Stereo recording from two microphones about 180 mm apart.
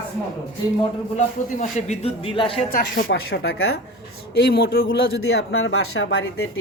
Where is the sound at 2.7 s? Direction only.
75° left (ahead or behind).